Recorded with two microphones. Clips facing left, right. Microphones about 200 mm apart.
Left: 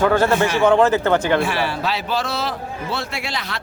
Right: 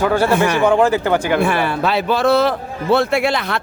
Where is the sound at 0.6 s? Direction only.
10° right (ahead or behind).